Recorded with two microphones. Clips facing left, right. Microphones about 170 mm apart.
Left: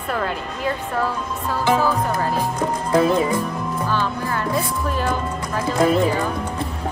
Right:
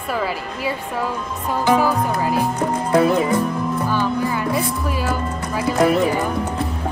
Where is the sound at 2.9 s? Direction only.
30° left (ahead or behind).